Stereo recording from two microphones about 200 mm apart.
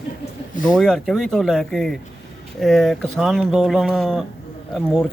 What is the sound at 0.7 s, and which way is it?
Speech, 5° left (ahead or behind).